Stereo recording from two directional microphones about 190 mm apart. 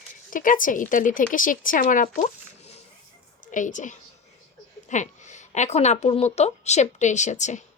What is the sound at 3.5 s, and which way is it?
Speech, 40° left (ahead or behind).